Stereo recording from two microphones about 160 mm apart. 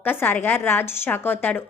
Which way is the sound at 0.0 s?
10° left (ahead or behind).